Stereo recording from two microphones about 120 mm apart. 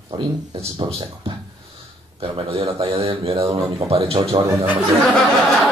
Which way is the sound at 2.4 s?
45° right (ahead or behind).